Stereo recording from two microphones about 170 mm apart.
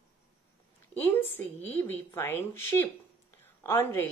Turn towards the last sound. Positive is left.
turn(degrees=15)  # may be behind; listen again after turning